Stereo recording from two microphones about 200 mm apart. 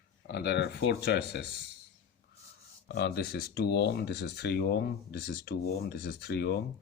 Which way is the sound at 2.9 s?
55° left (ahead or behind).